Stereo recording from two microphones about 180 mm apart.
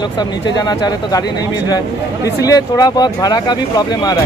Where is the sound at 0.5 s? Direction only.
20° left (ahead or behind).